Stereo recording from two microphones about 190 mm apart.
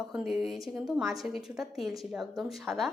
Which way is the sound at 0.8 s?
15° right (ahead or behind).